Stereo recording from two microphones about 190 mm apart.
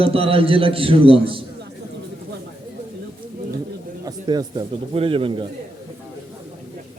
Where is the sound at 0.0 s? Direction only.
30° right (ahead or behind).